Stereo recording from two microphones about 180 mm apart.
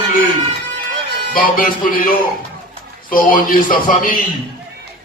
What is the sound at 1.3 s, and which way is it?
A man's voice, 50° left (ahead or behind).